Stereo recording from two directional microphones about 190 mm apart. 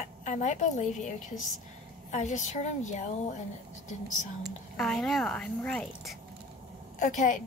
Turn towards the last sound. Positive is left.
turn(degrees=40)  # may be behind; listen again after turning